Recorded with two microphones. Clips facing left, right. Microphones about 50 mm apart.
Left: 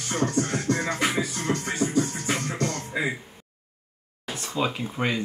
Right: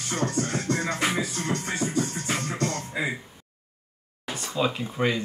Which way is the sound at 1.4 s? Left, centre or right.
Centre.